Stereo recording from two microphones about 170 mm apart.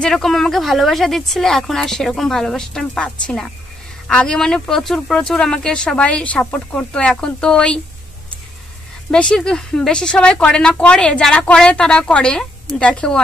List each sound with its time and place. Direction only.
0.0 s speech: centre (ahead or behind)
9.1 s speech: 5° left (ahead or behind)